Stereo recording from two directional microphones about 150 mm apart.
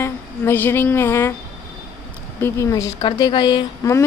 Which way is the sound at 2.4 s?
20° left (ahead or behind).